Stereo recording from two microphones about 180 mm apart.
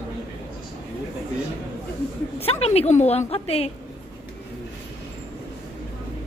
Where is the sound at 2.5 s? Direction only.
35° left (ahead or behind).